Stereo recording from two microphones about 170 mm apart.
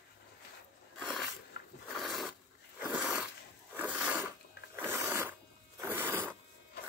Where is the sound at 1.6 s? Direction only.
65° left (ahead or behind).